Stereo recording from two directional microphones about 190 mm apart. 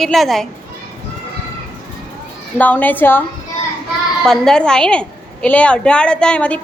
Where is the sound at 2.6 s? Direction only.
10° left (ahead or behind).